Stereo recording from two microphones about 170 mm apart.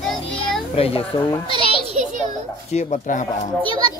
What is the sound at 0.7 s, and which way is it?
Speech, 35° left (ahead or behind).